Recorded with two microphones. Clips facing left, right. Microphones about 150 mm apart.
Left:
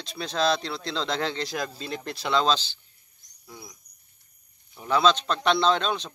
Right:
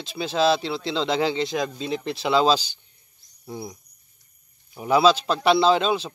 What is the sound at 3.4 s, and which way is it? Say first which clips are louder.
Speech: right 11 dB; 25° right (ahead or behind).